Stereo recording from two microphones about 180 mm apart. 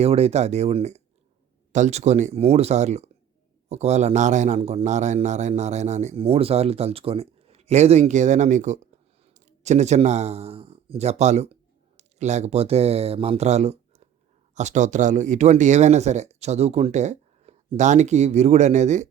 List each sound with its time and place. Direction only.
0.0 s a man's voice: 35° right (ahead or behind)